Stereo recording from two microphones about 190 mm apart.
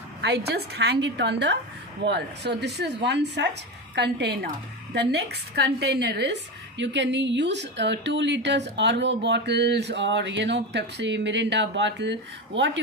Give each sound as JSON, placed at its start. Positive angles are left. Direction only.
{"t": 0.2, "sound": "a woman's voice", "side_deg": -60}